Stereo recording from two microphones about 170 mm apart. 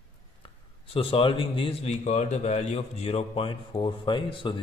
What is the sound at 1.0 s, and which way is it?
A man's voice, 30° left (ahead or behind).